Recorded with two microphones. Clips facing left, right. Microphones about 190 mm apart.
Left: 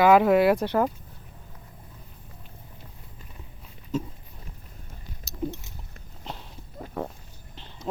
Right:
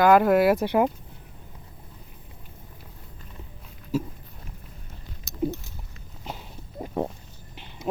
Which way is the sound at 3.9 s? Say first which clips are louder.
Right 2 dB; 10° right (ahead or behind).